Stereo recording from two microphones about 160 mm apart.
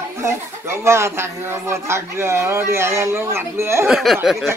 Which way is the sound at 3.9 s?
Centre (ahead or behind).